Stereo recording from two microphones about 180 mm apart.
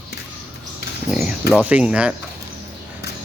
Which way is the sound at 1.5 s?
5° right (ahead or behind).